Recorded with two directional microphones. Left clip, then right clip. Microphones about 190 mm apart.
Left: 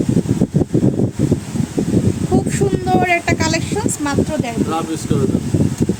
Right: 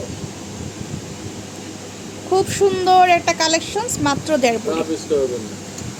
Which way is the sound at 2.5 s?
10° right (ahead or behind).